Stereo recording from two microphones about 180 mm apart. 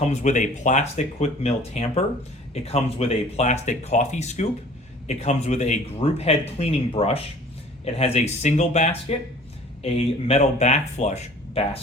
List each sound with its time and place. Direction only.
0.1 s speech: 40° left (ahead or behind)